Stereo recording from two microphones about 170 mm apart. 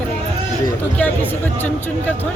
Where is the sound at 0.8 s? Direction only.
10° left (ahead or behind).